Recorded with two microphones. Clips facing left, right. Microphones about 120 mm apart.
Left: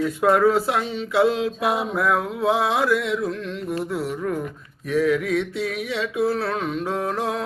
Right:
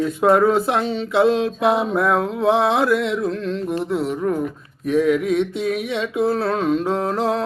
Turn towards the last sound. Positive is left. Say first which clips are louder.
# right 4 dB
turn(degrees=-30)  # may be behind; listen again after turning